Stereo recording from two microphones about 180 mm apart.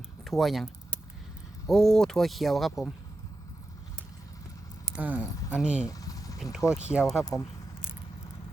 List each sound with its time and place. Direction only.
0.3 s speech: centre (ahead or behind)
4.9 s speech: 10° right (ahead or behind)
5.8 s vehicle: 20° left (ahead or behind)
6.8 s speech: 5° right (ahead or behind)